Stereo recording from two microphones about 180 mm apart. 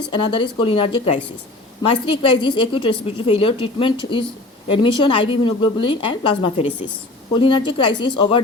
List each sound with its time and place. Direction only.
0.1 s a woman's voice: 25° left (ahead or behind)